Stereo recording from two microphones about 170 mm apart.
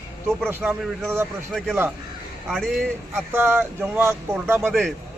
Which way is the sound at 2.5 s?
5° left (ahead or behind).